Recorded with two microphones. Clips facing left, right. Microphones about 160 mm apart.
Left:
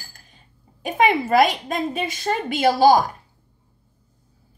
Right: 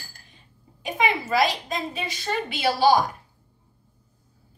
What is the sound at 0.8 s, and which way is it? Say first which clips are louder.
A woman's voice: left 6 dB; 50° left (ahead or behind).